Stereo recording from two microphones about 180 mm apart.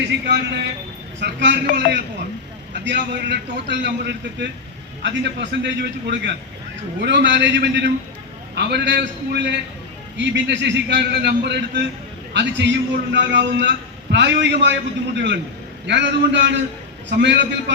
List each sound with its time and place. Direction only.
1.2 s a man's voice: 75° right (ahead or behind)
5.0 s a man's voice: 80° right
12.3 s a man's voice: 80° right